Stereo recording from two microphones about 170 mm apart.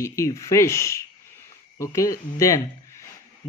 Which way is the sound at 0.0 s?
15° left (ahead or behind).